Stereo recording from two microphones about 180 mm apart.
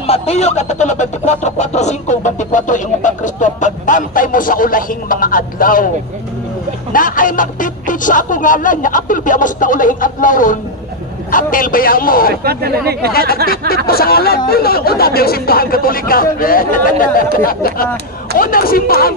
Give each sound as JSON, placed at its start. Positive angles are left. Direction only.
{"t": 0.0, "sound": "speech", "side_deg": 35}
{"t": 6.9, "sound": "speech", "side_deg": 50}
{"t": 12.4, "sound": "speech", "side_deg": -60}
{"t": 13.8, "sound": "speech", "side_deg": 60}
{"t": 18.4, "sound": "speech", "side_deg": 50}